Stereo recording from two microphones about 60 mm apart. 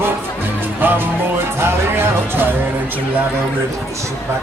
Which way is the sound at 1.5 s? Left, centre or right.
Right.